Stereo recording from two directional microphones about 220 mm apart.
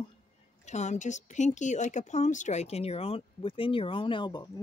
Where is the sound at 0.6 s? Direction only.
30° left (ahead or behind).